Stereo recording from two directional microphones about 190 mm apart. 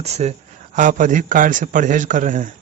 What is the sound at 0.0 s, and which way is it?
Speech, 35° right (ahead or behind).